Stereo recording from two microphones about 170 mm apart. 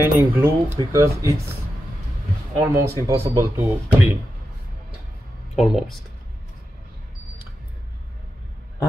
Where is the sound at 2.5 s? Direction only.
15° right (ahead or behind).